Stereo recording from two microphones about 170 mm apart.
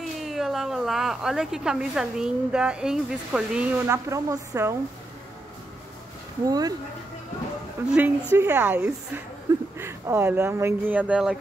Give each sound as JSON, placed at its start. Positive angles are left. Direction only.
{"t": 0.2, "sound": "a woman's voice", "side_deg": 0}
{"t": 3.8, "sound": "speech", "side_deg": -15}
{"t": 6.4, "sound": "speech", "side_deg": -20}
{"t": 7.9, "sound": "speech", "side_deg": -10}